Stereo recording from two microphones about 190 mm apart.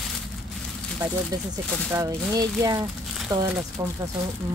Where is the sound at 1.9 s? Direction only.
15° right (ahead or behind).